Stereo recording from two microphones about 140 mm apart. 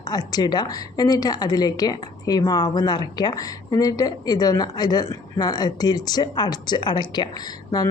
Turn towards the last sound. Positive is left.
turn(degrees=30)  # may be behind; listen again after turning